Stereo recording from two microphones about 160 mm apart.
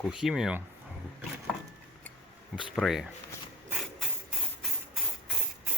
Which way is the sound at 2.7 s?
Centre (ahead or behind).